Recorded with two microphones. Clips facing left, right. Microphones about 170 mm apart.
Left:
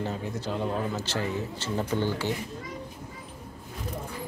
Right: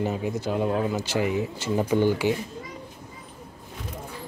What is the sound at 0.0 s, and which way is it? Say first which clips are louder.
Speech: right 5 dB; 10° right (ahead or behind).